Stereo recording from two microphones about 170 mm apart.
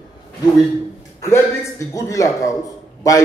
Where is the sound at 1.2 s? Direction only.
15° left (ahead or behind).